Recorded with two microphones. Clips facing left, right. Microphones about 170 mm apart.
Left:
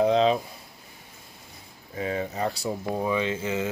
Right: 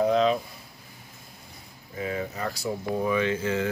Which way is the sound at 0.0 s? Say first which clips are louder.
Left 1 dB; 25° left (ahead or behind).